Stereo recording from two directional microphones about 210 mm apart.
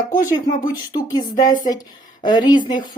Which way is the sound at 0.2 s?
20° left (ahead or behind).